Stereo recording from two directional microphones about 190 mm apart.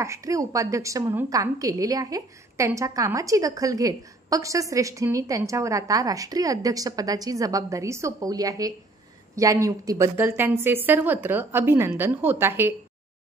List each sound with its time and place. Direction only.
0.0 s a woman's voice: 15° right (ahead or behind)